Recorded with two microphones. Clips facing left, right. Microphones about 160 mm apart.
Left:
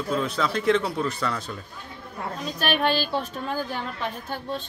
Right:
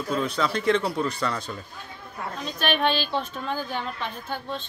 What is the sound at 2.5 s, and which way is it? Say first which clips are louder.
Speech: even; 5° left (ahead or behind).